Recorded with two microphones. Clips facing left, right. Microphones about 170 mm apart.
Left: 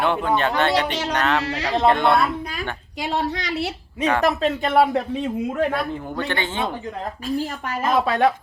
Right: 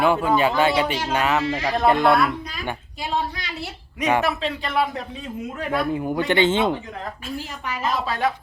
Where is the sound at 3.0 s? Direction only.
80° left.